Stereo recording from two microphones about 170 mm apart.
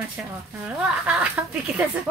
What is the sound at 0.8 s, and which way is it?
Speech, 5° right (ahead or behind).